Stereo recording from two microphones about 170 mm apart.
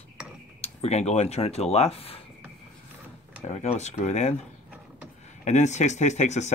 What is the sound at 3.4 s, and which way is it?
Speech, 40° left (ahead or behind).